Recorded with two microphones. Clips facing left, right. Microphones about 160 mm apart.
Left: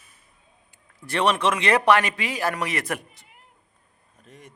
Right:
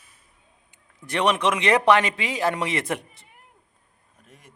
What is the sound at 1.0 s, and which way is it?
Speech, 20° right (ahead or behind).